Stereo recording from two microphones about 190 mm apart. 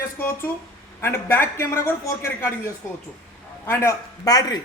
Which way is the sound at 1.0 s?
10° left (ahead or behind).